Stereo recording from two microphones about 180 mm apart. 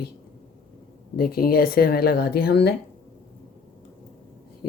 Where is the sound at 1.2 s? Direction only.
55° left (ahead or behind).